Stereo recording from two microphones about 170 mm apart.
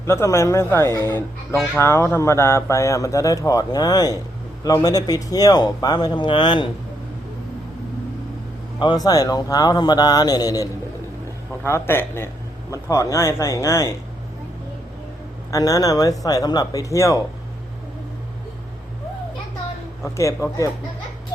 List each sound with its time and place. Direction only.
0.0 s a man's voice: 15° left (ahead or behind)
8.8 s a man's voice: 25° left (ahead or behind)
15.4 s a man's voice: 20° left (ahead or behind)
20.1 s speech: 20° left (ahead or behind)